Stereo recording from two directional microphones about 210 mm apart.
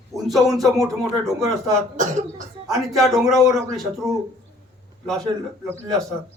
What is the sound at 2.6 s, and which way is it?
Speech, centre (ahead or behind).